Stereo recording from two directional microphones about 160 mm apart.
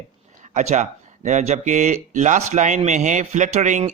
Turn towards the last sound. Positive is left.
turn(degrees=-50)  # may be behind; listen again after turning